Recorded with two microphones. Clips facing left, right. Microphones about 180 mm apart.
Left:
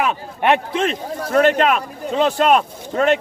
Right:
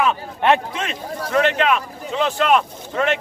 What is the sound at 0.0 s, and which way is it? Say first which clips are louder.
Speech: even; 15° left (ahead or behind).